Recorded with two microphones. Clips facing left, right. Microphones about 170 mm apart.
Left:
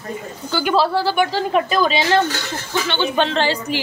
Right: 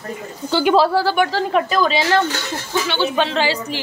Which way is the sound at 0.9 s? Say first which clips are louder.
Right 2 dB; 5° right (ahead or behind).